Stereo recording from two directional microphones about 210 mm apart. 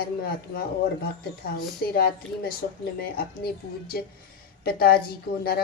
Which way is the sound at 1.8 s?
45° left (ahead or behind).